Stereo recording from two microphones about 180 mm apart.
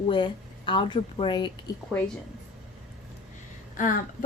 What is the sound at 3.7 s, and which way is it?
Speech, 45° left (ahead or behind).